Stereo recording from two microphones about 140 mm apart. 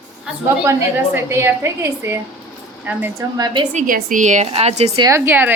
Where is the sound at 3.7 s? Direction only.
70° right (ahead or behind); by 4.9 s 50° right (ahead or behind).